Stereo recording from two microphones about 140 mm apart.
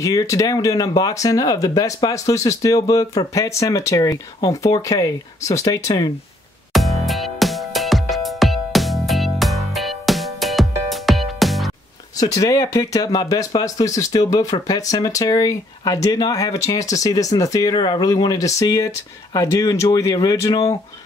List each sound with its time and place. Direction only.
0.0 s speech: 25° left (ahead or behind)
6.7 s music: centre (ahead or behind)
12.2 s speech: 25° left (ahead or behind)